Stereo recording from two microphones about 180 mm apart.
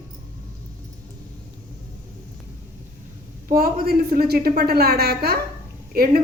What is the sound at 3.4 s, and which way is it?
Speech, 55° right (ahead or behind).